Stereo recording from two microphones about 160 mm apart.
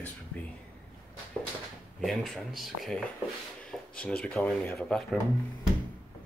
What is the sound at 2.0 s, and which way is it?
Speech, centre (ahead or behind).